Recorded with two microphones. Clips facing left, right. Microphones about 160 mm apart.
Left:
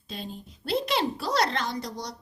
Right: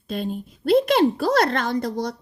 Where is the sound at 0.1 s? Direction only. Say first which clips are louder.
Right 11 dB; 55° right (ahead or behind).